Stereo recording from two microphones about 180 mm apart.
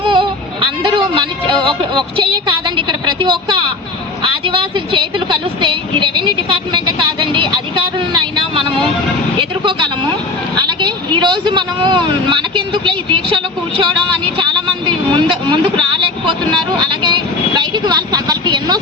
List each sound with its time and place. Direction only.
0.0 s music: 25° right (ahead or behind)
4.2 s vehicle: 30° right (ahead or behind)
10.7 s speech: 25° right (ahead or behind)
14.8 s vehicle: 25° right (ahead or behind)